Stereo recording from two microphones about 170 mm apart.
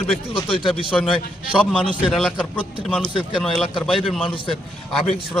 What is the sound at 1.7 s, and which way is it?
A man's voice, 5° left (ahead or behind).